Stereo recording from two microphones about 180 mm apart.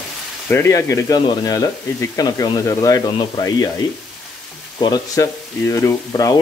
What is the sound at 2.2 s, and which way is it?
Frying, 20° left (ahead or behind).